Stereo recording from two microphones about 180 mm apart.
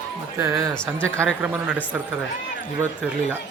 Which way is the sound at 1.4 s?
5° right (ahead or behind).